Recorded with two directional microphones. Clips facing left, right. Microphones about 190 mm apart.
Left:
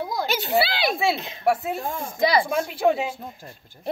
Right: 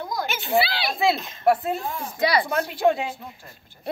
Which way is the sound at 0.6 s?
45° left (ahead or behind).